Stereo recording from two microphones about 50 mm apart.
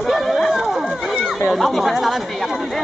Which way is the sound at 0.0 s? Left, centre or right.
Centre.